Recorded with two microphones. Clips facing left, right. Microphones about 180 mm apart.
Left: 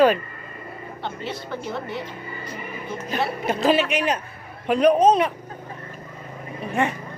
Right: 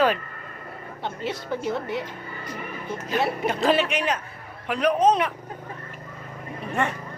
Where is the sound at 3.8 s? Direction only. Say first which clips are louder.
Left 2 dB; 25° right (ahead or behind).